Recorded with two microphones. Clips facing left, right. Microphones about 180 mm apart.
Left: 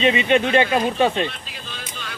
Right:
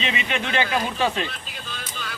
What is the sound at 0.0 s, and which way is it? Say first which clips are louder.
Speech: left 10 dB; 30° left (ahead or behind).